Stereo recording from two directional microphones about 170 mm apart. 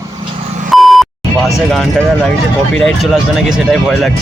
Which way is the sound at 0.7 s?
Centre (ahead or behind).